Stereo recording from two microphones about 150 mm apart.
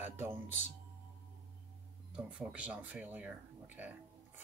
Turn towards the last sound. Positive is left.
turn(degrees=-10)  # may be behind; listen again after turning